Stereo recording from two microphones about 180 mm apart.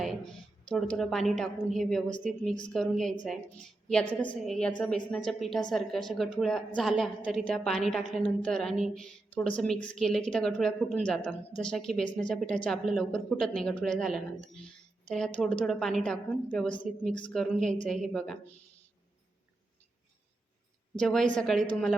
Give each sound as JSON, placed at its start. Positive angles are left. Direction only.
{"t": 0.0, "sound": "a woman's voice", "side_deg": 0}
{"t": 14.4, "sound": "speech", "side_deg": 30}
{"t": 15.0, "sound": "a woman's voice", "side_deg": 5}
{"t": 21.0, "sound": "a woman's voice", "side_deg": 0}